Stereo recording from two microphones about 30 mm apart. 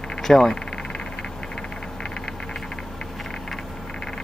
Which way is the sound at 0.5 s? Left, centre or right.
Left.